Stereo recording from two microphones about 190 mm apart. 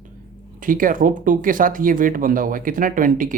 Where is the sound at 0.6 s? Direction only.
45° right (ahead or behind).